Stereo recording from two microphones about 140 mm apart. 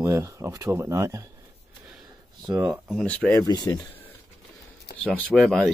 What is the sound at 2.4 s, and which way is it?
Speech, 25° right (ahead or behind).